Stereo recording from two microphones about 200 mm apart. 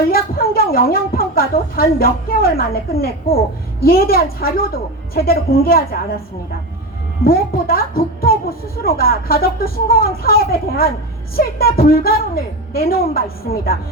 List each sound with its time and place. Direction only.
0.1 s a woman's voice: 50° left (ahead or behind)
7.3 s a woman's voice: 50° left (ahead or behind)